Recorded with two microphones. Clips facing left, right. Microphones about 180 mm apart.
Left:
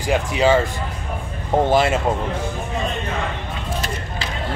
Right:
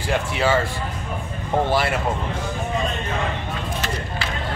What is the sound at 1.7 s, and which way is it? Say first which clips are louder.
Speech: left 6 dB; 20° left (ahead or behind).